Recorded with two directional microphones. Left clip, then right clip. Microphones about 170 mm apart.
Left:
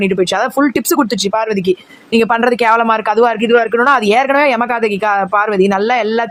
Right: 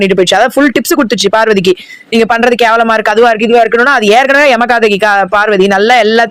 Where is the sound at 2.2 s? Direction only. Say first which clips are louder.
Right 5 dB; 20° right (ahead or behind).